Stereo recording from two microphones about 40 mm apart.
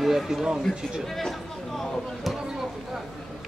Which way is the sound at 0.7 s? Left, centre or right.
Centre.